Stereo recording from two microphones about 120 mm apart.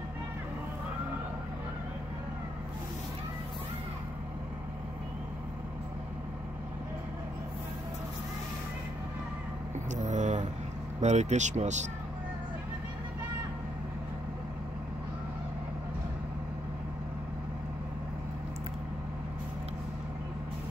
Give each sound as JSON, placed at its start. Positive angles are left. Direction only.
{"t": 10.0, "sound": "vehicle", "side_deg": -85}
{"t": 11.0, "sound": "speech", "side_deg": -70}